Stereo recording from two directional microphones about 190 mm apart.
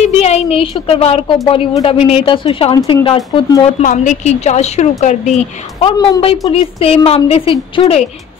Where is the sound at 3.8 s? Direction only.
40° left (ahead or behind).